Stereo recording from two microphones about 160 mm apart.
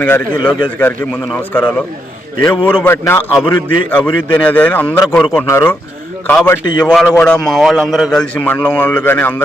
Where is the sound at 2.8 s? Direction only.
15° left (ahead or behind).